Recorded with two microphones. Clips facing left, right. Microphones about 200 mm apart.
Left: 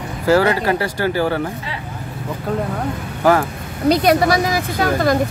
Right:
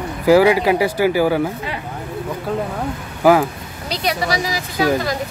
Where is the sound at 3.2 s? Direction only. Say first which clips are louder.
Right 2 dB; 10° right (ahead or behind).